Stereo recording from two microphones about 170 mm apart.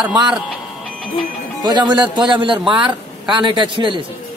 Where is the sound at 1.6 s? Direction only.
25° right (ahead or behind).